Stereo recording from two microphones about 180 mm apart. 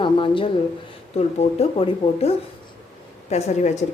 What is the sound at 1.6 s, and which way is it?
Speech, 35° left (ahead or behind).